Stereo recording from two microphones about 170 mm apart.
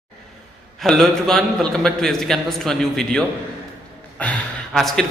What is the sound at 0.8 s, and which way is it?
A man's voice, centre (ahead or behind).